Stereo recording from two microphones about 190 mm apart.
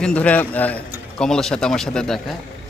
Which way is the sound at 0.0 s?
5° left (ahead or behind).